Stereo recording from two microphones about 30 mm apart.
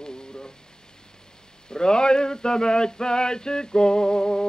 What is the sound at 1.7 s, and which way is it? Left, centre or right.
Male singing, left.